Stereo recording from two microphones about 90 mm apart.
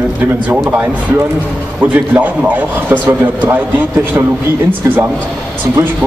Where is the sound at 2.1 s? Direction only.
20° right (ahead or behind).